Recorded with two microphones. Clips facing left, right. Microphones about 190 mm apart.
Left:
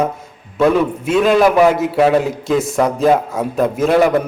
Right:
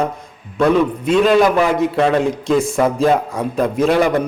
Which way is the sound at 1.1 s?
5° left (ahead or behind).